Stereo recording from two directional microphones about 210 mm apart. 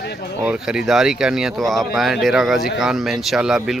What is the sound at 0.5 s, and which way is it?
Speech, 5° right (ahead or behind).